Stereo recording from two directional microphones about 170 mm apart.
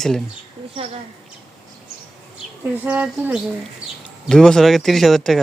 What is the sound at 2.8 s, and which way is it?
Speech, 10° right (ahead or behind).